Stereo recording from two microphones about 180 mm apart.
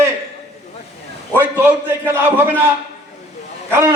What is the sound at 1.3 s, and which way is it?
Speech, 10° right (ahead or behind).